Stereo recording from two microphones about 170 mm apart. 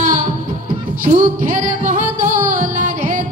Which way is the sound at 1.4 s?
50° right (ahead or behind).